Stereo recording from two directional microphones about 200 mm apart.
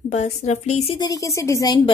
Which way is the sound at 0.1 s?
35° left (ahead or behind).